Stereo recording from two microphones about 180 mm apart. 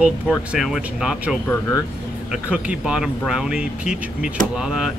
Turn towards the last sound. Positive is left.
turn(degrees=-5)  # may be behind; listen again after turning